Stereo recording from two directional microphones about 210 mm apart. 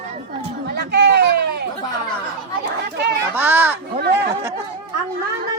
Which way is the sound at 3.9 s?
50° right (ahead or behind).